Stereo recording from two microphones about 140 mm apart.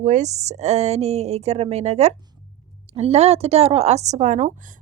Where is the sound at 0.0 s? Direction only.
55° right (ahead or behind).